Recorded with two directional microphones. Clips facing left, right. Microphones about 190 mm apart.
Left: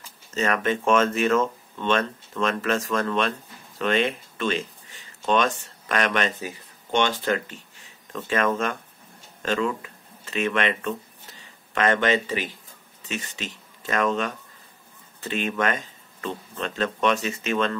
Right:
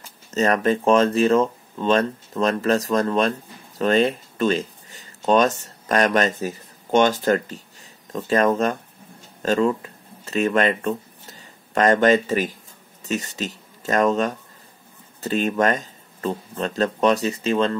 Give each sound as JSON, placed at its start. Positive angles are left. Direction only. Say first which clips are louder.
{"t": 0.3, "sound": "speech", "louder": "right 5 dB", "side_deg": -40}